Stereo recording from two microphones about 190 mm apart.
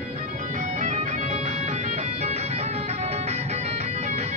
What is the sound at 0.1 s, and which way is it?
Bagpipes, 35° right (ahead or behind).